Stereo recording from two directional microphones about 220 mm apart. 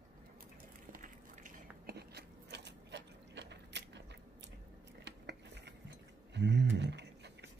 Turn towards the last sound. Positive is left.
turn(degrees=-50)  # may be behind; listen again after turning